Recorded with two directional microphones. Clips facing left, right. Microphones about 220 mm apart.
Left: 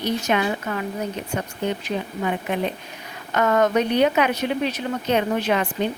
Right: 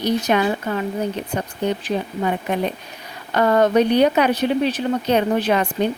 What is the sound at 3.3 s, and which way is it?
Speech, 30° right (ahead or behind).